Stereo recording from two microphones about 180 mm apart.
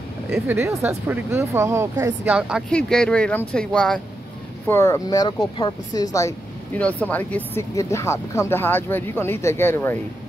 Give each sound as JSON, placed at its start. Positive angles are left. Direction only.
{"t": 0.3, "sound": "speech", "side_deg": -15}